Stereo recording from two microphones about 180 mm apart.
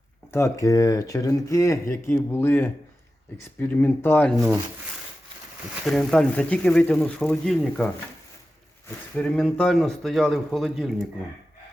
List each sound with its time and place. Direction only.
0.3 s speech: 15° left (ahead or behind)
5.8 s speech: centre (ahead or behind)
9.1 s speech: 5° left (ahead or behind)